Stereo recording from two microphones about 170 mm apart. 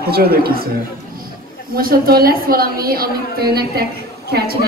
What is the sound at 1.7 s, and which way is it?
A woman's voice, 60° right (ahead or behind).